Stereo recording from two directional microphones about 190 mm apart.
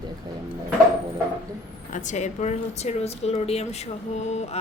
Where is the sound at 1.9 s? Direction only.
40° left (ahead or behind).